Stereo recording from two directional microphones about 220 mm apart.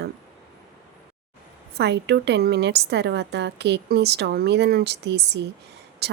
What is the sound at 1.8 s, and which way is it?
Speech, 50° right (ahead or behind).